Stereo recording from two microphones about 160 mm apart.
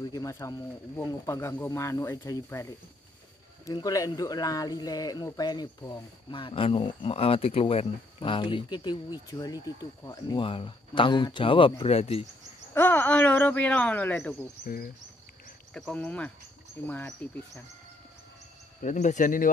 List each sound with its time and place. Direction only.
0.0 s speech: 20° left (ahead or behind); by 12.3 s 40° left (ahead or behind)
12.7 s speech: 10° left (ahead or behind)
15.7 s speech: 5° left (ahead or behind)
18.8 s speech: 50° left (ahead or behind)